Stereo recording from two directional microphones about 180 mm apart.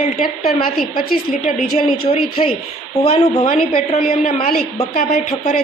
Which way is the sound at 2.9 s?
35° left (ahead or behind).